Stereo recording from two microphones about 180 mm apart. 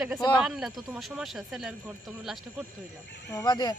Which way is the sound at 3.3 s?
20° left (ahead or behind).